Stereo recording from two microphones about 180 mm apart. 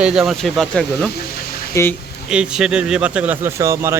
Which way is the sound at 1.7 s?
15° left (ahead or behind).